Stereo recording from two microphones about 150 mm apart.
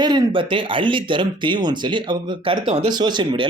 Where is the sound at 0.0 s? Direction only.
30° right (ahead or behind).